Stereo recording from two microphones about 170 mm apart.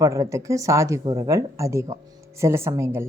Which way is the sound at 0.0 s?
15° right (ahead or behind).